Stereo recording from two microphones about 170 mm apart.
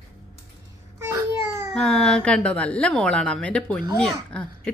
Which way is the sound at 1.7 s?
5° left (ahead or behind).